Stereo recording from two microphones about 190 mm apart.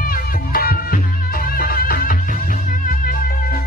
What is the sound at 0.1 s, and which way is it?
Music, 50° left (ahead or behind).